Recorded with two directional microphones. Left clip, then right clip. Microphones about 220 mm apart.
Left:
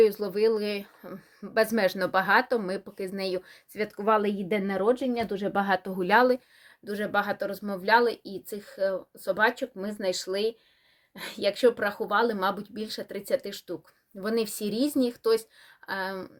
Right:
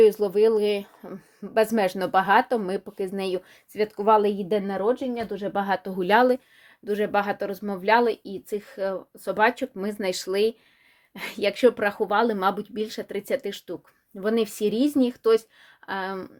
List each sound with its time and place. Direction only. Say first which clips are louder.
0.0 s speech: right 4 dB; 30° right (ahead or behind); by 6.0 s 5° right (ahead or behind)
6.0 s speech: right 3 dB; 25° right (ahead or behind)